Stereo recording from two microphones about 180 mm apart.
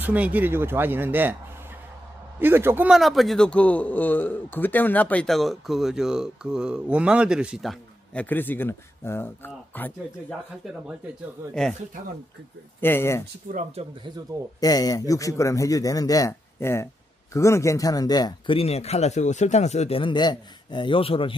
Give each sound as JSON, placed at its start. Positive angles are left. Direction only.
{"t": 0.0, "sound": "speech", "side_deg": -10}
{"t": 2.3, "sound": "a man's voice", "side_deg": -10}
{"t": 12.8, "sound": "speech", "side_deg": 15}
{"t": 13.5, "sound": "speech", "side_deg": -40}
{"t": 14.6, "sound": "a man's voice", "side_deg": 20}
{"t": 18.6, "sound": "speech", "side_deg": 35}